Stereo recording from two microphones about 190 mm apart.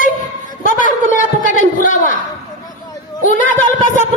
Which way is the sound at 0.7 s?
45° left (ahead or behind).